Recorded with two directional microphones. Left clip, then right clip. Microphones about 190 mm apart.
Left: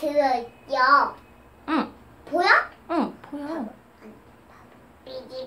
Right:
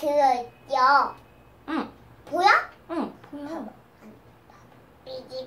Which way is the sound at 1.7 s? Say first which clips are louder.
Left 5 dB; 15° left (ahead or behind).